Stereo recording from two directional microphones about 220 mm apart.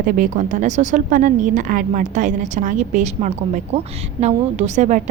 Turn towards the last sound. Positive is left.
turn(degrees=-35)  # may be behind; listen again after turning